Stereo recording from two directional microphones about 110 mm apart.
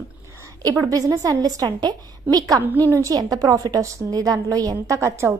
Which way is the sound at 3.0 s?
35° right (ahead or behind).